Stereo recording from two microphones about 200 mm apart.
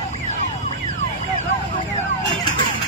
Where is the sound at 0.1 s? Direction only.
35° left (ahead or behind).